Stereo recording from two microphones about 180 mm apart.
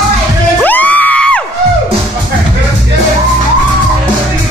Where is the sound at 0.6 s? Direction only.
10° left (ahead or behind).